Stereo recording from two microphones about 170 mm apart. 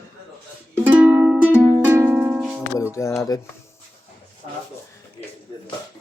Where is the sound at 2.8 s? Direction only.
15° left (ahead or behind).